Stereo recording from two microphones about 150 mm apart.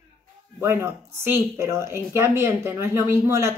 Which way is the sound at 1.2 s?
15° right (ahead or behind).